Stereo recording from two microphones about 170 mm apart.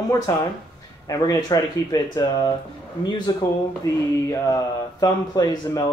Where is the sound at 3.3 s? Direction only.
20° left (ahead or behind).